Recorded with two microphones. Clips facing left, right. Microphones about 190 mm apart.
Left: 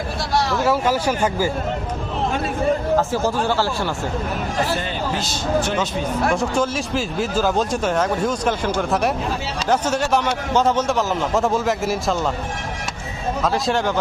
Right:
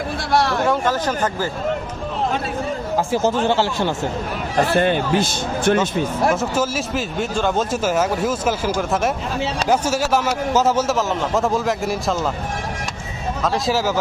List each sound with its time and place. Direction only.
0.3 s a sound: 60° right (ahead or behind)
0.6 s speech: 5° left (ahead or behind)
3.1 s speech: 20° right (ahead or behind)
4.7 s speech: 55° right (ahead or behind)
6.3 s speech: 5° right (ahead or behind)
13.4 s speech: centre (ahead or behind)